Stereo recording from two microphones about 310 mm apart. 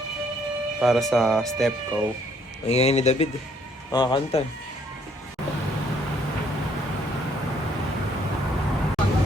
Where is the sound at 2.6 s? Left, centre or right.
Centre.